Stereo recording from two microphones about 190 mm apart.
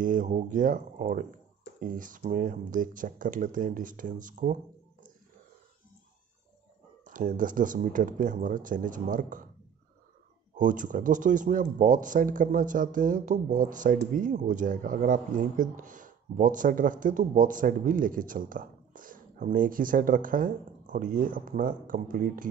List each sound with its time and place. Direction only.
0.0 s speech: 45° right (ahead or behind)
7.1 s speech: 45° right (ahead or behind)
10.6 s speech: 45° right (ahead or behind)